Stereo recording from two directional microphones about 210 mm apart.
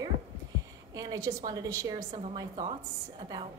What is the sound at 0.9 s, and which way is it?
A woman's voice, 15° right (ahead or behind).